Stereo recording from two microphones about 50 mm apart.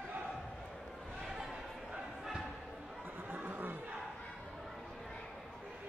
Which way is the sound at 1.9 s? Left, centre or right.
Centre.